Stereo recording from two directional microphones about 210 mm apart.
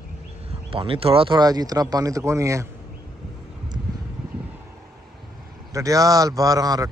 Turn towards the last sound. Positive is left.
turn(degrees=-15)  # may be behind; listen again after turning